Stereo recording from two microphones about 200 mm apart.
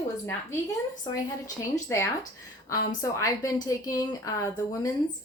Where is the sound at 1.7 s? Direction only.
15° left (ahead or behind).